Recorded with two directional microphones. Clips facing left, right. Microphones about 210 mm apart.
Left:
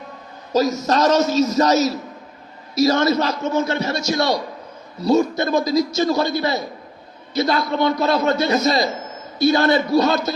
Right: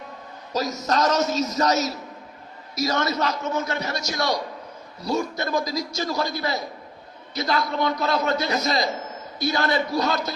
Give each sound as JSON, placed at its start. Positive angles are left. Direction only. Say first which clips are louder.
{"t": 0.5, "sound": "a man's voice", "louder": "left 6 dB", "side_deg": 25}